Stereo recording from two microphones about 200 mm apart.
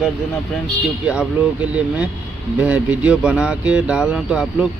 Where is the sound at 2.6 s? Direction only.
5° right (ahead or behind).